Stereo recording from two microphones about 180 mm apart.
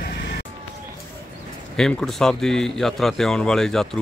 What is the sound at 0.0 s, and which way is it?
Music, 60° left (ahead or behind).